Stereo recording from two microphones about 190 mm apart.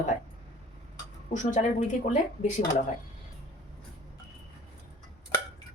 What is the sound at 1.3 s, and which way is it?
Speech, 40° left (ahead or behind).